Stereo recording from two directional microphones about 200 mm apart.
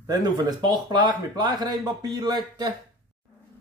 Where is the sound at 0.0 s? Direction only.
20° right (ahead or behind).